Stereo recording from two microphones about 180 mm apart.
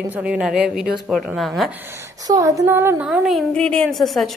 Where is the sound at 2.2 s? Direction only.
20° right (ahead or behind); by 4.3 s centre (ahead or behind).